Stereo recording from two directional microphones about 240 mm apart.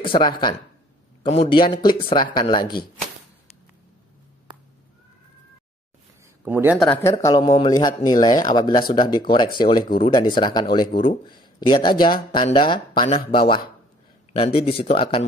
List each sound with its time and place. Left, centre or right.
0.3 s speech: centre
6.4 s speech: centre
6.9 s speech: centre